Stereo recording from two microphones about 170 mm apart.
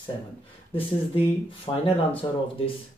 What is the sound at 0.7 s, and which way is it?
Speech, 30° left (ahead or behind).